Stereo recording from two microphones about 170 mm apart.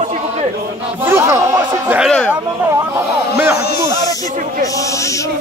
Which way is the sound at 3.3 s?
15° right (ahead or behind).